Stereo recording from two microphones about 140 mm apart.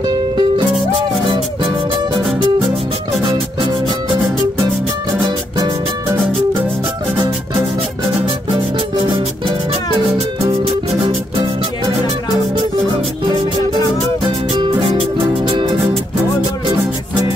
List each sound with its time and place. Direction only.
0.0 s music: 30° right (ahead or behind)
14.6 s music: 35° right (ahead or behind)